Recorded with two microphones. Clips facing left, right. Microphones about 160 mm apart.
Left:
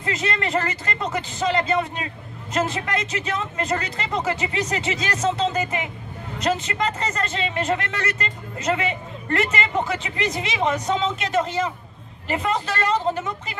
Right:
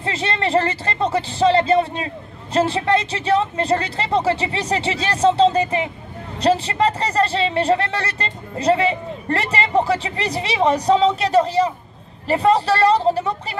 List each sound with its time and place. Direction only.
0.0 s speech: 30° right (ahead or behind)